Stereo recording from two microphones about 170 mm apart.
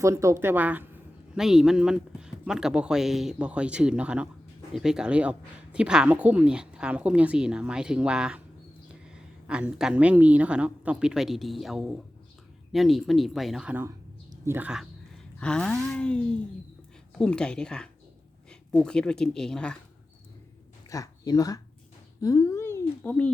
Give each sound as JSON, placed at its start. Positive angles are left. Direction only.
{"t": 0.0, "sound": "a woman's voice", "side_deg": -15}
{"t": 15.4, "sound": "speech", "side_deg": 5}
{"t": 20.9, "sound": "speech", "side_deg": 20}